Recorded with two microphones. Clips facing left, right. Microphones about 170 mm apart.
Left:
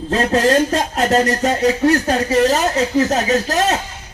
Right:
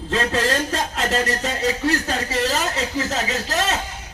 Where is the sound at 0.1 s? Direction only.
40° left (ahead or behind).